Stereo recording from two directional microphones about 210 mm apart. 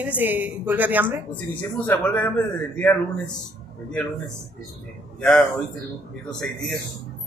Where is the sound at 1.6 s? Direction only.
5° left (ahead or behind).